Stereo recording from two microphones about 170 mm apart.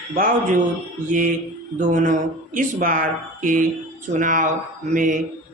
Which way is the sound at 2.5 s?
55° right (ahead or behind).